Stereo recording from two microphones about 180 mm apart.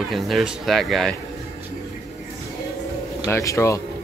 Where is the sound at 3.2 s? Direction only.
15° left (ahead or behind).